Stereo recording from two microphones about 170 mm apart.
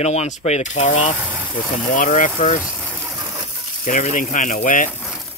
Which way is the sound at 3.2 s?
25° right (ahead or behind).